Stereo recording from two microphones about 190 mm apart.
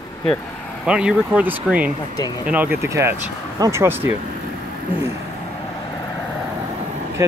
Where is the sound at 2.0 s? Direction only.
20° left (ahead or behind).